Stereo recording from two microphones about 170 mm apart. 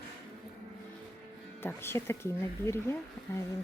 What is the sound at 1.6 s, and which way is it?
A woman's voice, 15° left (ahead or behind).